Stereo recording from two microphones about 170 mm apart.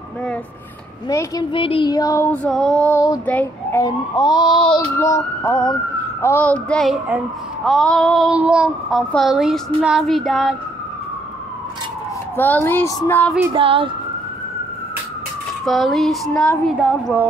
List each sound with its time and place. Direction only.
1.0 s a child's voice: 20° left (ahead or behind)
2.3 s a child's voice: 5° left (ahead or behind); by 4.8 s 30° left (ahead or behind)
5.0 s a woman's voice: 15° left (ahead or behind); by 10.5 s centre (ahead or behind)
12.4 s speech: 10° left (ahead or behind)
13.5 s speech: 30° right (ahead or behind)
15.6 s a woman's voice: centre (ahead or behind)